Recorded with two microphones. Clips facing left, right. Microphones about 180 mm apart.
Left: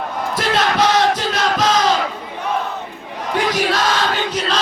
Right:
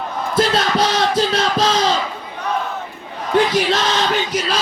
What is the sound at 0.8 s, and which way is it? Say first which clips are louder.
Music: left 1 dB; 30° right (ahead or behind).